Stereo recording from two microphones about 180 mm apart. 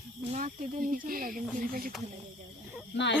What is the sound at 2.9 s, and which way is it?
Speech, 75° left (ahead or behind).